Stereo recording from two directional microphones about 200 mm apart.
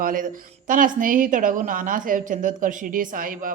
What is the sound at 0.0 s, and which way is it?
A woman's voice, 45° right (ahead or behind).